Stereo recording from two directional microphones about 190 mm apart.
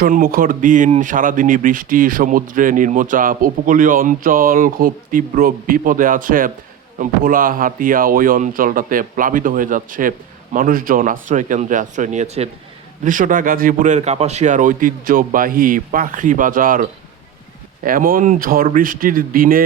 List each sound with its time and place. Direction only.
0.0 s speech: 50° right (ahead or behind)
17.8 s speech: 45° right (ahead or behind)